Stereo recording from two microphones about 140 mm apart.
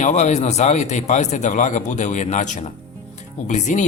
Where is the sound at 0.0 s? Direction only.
55° left (ahead or behind).